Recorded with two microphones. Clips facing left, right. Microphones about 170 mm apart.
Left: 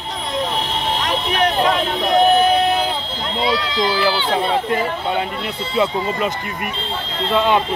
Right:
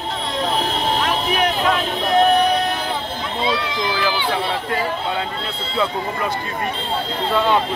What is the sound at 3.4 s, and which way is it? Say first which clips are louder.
Speech: left 3 dB; 20° right (ahead or behind).